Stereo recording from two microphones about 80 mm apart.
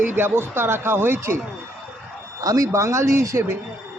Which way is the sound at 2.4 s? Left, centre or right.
Right.